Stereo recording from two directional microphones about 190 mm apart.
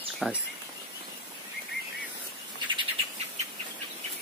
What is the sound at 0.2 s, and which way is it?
Speech, centre (ahead or behind).